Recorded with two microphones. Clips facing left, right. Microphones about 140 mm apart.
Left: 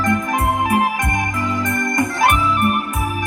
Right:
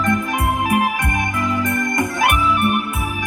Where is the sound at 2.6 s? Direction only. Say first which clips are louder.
Even; 40° left (ahead or behind).